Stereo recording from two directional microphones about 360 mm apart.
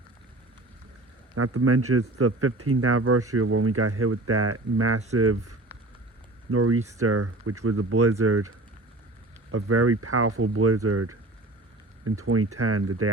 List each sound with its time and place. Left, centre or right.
1.4 s speech: right